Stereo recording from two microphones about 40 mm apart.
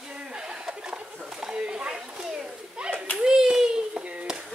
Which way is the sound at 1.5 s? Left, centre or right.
Right.